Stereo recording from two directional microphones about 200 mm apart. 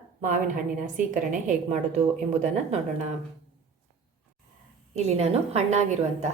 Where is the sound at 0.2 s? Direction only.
40° right (ahead or behind).